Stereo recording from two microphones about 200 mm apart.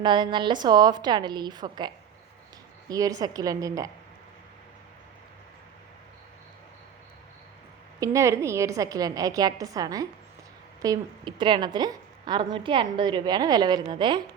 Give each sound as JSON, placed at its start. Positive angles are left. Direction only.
{"t": 0.0, "sound": "a woman's voice", "side_deg": -25}
{"t": 2.9, "sound": "a woman's voice", "side_deg": -20}
{"t": 7.9, "sound": "a woman's voice", "side_deg": -15}